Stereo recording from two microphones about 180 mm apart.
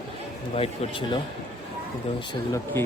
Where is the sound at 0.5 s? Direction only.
35° left (ahead or behind).